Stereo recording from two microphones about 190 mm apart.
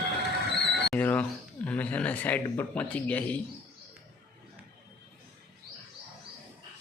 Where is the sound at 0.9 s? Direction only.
10° left (ahead or behind).